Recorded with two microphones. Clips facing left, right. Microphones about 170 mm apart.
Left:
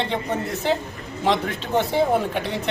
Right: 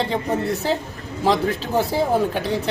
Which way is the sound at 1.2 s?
35° right (ahead or behind).